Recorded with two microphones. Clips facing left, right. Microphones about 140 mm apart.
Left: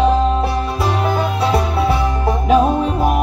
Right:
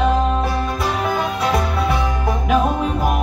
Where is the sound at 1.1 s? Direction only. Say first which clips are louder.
Left 2 dB; 30° left (ahead or behind).